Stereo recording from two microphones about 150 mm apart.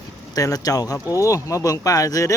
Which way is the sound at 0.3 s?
25° left (ahead or behind).